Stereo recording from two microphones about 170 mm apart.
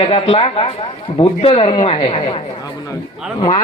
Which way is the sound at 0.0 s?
35° left (ahead or behind).